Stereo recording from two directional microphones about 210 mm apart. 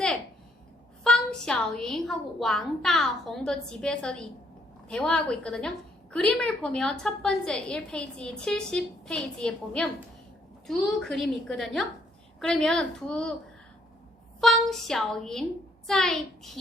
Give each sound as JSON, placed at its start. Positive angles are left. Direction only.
{"t": 1.0, "sound": "a woman's voice", "side_deg": 5}
{"t": 14.4, "sound": "a woman's voice", "side_deg": 0}